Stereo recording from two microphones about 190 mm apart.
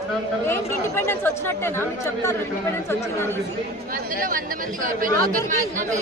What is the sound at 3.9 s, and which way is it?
Speech, 45° right (ahead or behind).